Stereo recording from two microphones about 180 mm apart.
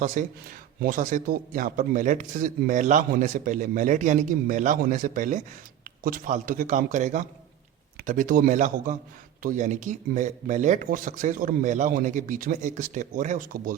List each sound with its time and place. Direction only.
0.0 s a man's voice: 45° right (ahead or behind)